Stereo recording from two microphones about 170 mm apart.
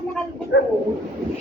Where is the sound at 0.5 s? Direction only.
85° left.